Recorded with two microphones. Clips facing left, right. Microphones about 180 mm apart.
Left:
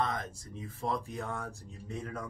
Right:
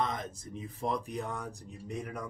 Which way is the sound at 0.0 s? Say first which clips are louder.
Even; 20° right (ahead or behind).